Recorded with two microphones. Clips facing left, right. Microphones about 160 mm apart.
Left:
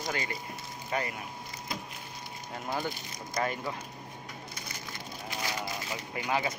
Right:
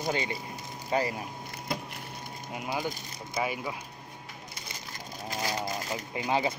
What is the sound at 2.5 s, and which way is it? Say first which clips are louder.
Speech: right 1 dB; 10° right (ahead or behind).